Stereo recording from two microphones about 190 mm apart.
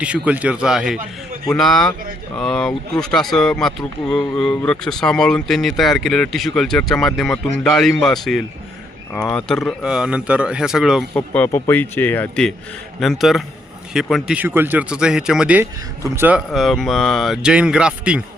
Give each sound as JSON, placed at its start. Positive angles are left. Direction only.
{"t": 0.0, "sound": "speech", "side_deg": -5}
{"t": 11.1, "sound": "speech", "side_deg": 10}